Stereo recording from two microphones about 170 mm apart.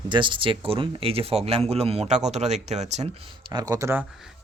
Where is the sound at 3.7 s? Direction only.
15° right (ahead or behind).